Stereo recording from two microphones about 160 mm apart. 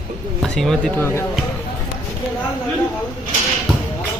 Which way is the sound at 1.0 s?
15° left (ahead or behind).